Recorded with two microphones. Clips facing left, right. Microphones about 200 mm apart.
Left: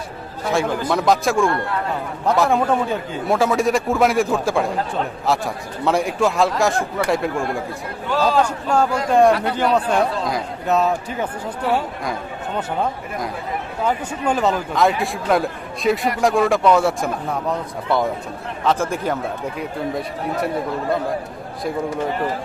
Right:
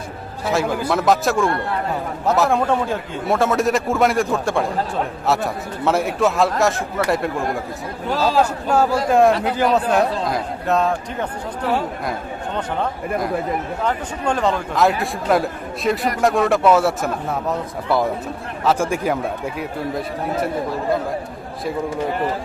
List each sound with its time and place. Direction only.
0.4 s a man's voice: 5° right (ahead or behind)
12.5 s a man's voice: 5° left (ahead or behind)
18.6 s a man's voice: 10° right (ahead or behind)